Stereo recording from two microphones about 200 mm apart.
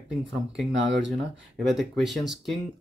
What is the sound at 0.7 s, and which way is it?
Speech, 65° right (ahead or behind).